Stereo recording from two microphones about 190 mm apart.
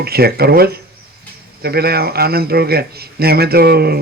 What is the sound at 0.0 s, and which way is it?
A man's voice, 55° right (ahead or behind).